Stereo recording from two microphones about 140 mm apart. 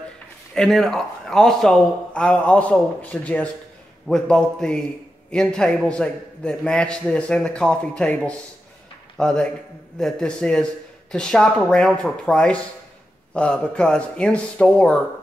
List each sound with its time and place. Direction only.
0.6 s a man's voice: centre (ahead or behind)